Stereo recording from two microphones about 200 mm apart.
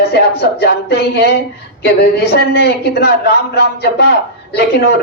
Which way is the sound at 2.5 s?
55° left (ahead or behind).